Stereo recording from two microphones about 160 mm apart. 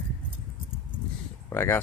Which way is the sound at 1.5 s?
15° left (ahead or behind).